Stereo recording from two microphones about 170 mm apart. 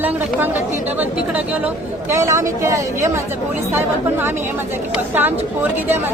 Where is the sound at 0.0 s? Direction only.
10° right (ahead or behind).